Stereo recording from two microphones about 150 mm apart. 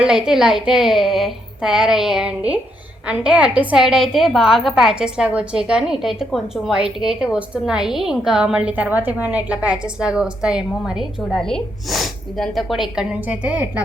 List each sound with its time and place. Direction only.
0.0 s a woman's voice: 5° right (ahead or behind)